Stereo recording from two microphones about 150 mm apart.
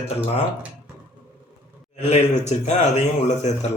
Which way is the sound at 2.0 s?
50° left (ahead or behind).